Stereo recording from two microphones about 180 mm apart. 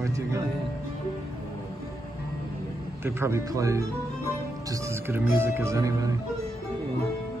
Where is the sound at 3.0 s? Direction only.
15° right (ahead or behind).